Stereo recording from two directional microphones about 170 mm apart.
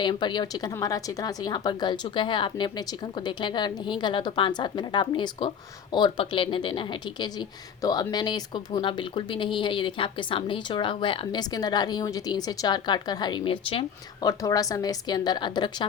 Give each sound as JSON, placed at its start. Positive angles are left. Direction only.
{"t": 0.0, "sound": "speech", "side_deg": 25}
{"t": 14.3, "sound": "speech", "side_deg": 20}